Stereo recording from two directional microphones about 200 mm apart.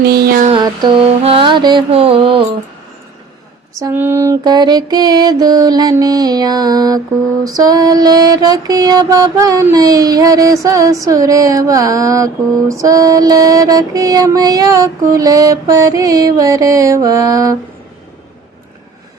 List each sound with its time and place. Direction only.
0.1 s music: 50° right (ahead or behind)
0.4 s mantra: 20° right (ahead or behind)
3.8 s mantra: 15° right (ahead or behind)